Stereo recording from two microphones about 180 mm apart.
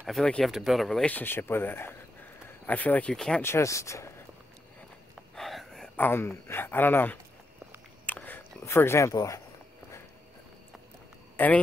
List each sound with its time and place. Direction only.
0.0 s speech: centre (ahead or behind)
5.3 s speech: centre (ahead or behind)
8.1 s a sound: 10° left (ahead or behind)
11.3 s speech: 10° left (ahead or behind)